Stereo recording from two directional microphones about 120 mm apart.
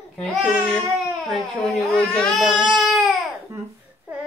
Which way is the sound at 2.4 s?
Centre (ahead or behind).